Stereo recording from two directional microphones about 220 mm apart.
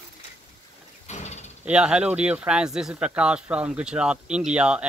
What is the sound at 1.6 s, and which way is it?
Speech, 5° right (ahead or behind).